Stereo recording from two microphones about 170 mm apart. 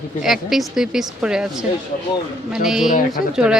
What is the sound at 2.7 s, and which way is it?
Speech, centre (ahead or behind).